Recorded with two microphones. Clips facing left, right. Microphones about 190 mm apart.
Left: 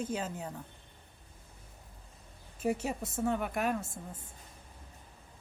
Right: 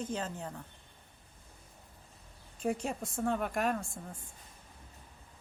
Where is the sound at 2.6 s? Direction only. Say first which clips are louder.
Left 1 dB; 5° left (ahead or behind).